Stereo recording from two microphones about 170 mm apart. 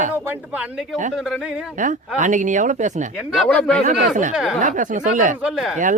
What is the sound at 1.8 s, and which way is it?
Speech, 50° right (ahead or behind).